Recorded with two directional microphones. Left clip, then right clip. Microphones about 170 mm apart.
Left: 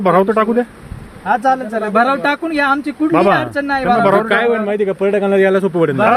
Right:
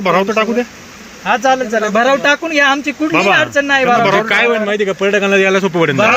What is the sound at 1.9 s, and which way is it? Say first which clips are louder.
Speech: right 1 dB; 30° right (ahead or behind).